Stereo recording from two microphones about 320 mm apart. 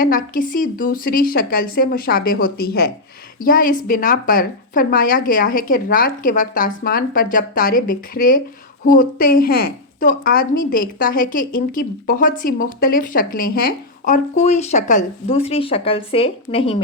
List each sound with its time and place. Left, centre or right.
0.0 s a woman's voice: left